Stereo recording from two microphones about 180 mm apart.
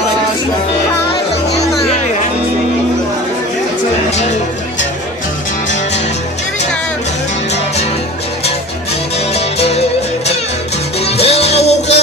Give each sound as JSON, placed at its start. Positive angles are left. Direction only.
{"t": 9.3, "sound": "music", "side_deg": 35}